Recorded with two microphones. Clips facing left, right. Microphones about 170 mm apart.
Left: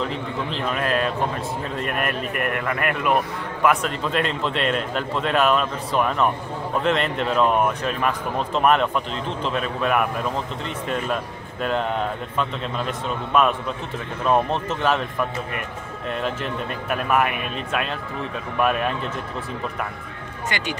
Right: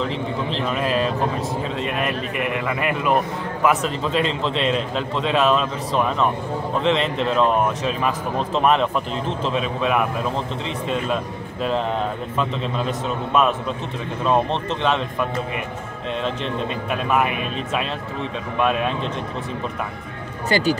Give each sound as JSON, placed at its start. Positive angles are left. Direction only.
{"t": 0.7, "sound": "speech", "side_deg": 0}
{"t": 12.4, "sound": "speech", "side_deg": 0}
{"t": 16.2, "sound": "speech", "side_deg": 5}
{"t": 20.4, "sound": "speech", "side_deg": -35}